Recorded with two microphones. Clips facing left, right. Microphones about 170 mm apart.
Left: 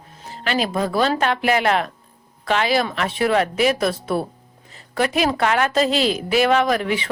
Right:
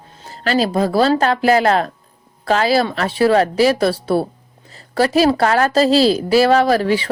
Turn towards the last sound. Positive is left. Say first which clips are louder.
# right 5 dB
turn(degrees=-35)  # may be behind; listen again after turning